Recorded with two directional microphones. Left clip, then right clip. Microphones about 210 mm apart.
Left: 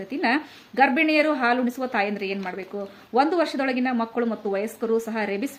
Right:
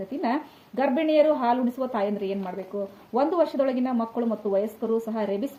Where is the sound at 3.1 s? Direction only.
15° left (ahead or behind).